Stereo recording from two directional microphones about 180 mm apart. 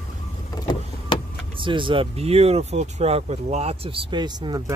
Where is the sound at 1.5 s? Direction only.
30° right (ahead or behind).